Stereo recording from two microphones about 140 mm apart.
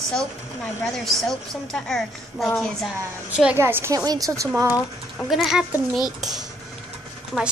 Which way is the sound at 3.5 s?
15° right (ahead or behind).